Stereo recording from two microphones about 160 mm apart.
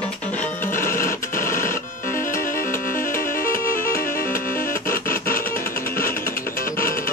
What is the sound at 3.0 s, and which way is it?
Music, 60° left (ahead or behind).